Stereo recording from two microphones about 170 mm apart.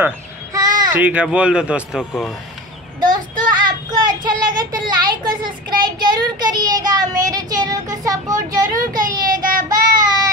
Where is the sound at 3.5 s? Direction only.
25° right (ahead or behind).